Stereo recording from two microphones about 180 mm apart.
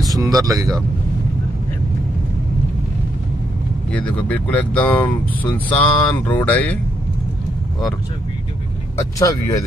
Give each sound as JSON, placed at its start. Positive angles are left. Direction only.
{"t": 0.1, "sound": "speech", "side_deg": -20}
{"t": 3.9, "sound": "speech", "side_deg": 5}
{"t": 9.2, "sound": "speech", "side_deg": 20}